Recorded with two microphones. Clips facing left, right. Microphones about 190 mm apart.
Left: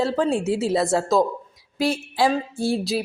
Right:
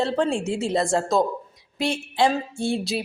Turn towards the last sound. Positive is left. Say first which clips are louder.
# left 2 dB
turn(degrees=0)  # may be behind; listen again after turning